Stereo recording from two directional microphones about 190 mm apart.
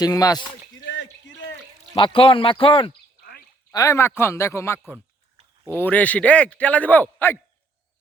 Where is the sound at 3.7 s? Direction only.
15° left (ahead or behind).